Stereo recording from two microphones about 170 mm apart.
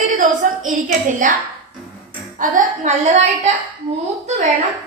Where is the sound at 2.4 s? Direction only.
50° right (ahead or behind).